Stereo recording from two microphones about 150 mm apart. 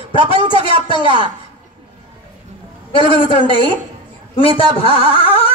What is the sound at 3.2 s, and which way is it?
Speech, 35° left (ahead or behind).